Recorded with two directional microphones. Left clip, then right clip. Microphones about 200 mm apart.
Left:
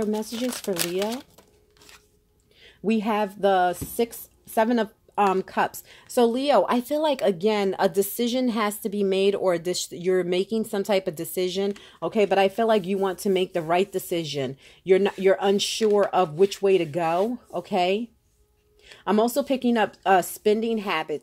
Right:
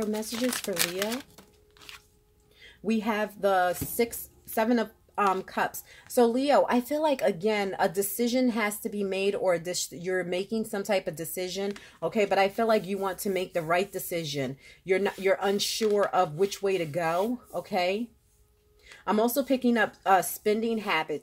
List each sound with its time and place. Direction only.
0.3 s speech: 5° left (ahead or behind)
2.6 s a woman's voice: 40° left (ahead or behind)
15.8 s speech: 5° left (ahead or behind)
16.1 s a woman's voice: 40° left (ahead or behind)
19.0 s a woman's voice: 35° left (ahead or behind)